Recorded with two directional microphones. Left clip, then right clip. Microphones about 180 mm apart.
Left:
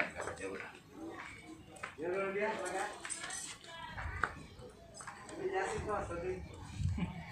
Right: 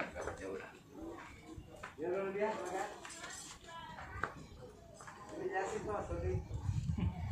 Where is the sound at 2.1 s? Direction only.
Centre (ahead or behind).